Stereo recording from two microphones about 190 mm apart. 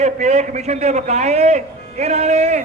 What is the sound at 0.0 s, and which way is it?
A man's voice, 35° right (ahead or behind).